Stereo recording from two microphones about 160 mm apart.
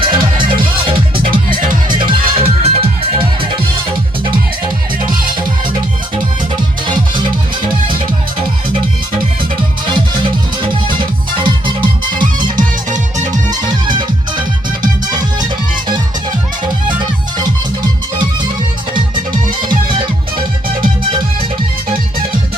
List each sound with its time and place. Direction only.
0.0 s music: 30° right (ahead or behind)
6.8 s music: 30° right (ahead or behind)
9.8 s music: 30° right (ahead or behind)
12.5 s music: 50° right (ahead or behind)
13.9 s music: 30° right (ahead or behind)
17.0 s music: 25° right (ahead or behind)